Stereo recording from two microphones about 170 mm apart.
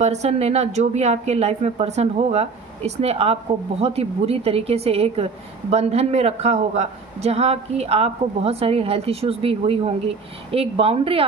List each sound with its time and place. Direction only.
0.0 s a woman's voice: 40° right (ahead or behind)